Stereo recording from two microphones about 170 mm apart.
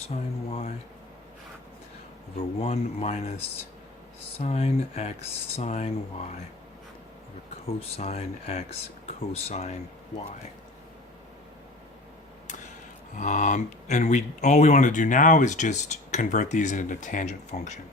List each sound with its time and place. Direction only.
0.1 s speech: 35° left (ahead or behind)
2.3 s speech: 35° left (ahead or behind)
4.4 s speech: 40° left (ahead or behind)
7.8 s speech: 35° left (ahead or behind)
13.1 s speech: 45° left (ahead or behind)